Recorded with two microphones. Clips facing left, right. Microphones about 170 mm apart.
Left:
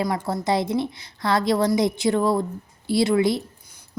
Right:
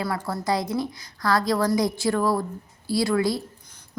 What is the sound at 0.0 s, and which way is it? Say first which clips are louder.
A woman's voice: left 3 dB; 15° left (ahead or behind).